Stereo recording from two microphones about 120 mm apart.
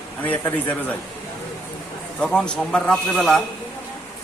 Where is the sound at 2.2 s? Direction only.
5° left (ahead or behind).